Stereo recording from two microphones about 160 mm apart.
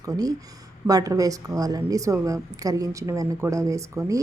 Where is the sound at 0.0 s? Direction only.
25° right (ahead or behind).